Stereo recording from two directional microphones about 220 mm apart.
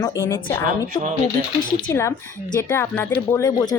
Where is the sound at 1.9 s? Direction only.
15° left (ahead or behind).